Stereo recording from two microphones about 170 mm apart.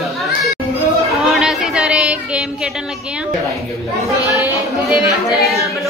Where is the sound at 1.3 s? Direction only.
Centre (ahead or behind).